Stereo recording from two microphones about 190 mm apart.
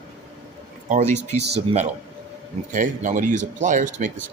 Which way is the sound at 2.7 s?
45° right (ahead or behind).